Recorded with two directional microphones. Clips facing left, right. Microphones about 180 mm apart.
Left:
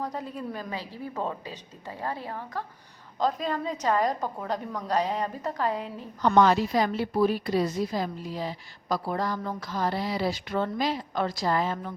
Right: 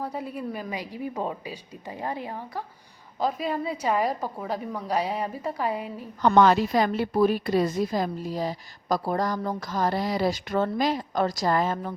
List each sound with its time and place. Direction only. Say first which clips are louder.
0.0 s a woman's voice: right 2 dB; 10° right (ahead or behind)
6.2 s a woman's voice: right 2 dB; 60° right (ahead or behind)